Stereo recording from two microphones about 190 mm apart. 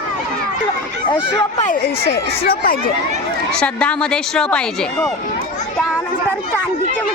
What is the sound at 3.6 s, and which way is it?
A woman's voice, 5° left (ahead or behind).